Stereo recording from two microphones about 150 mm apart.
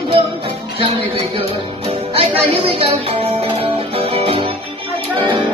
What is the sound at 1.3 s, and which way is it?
Music, 40° right (ahead or behind).